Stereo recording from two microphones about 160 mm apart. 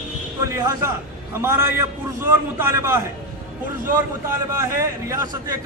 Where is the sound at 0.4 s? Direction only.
20° right (ahead or behind).